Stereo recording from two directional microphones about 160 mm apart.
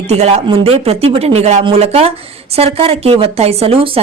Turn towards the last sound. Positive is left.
turn(degrees=-40)  # may be behind; listen again after turning